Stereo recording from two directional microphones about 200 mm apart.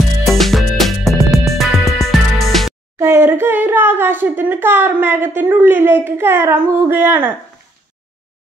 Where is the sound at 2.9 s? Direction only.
10° right (ahead or behind).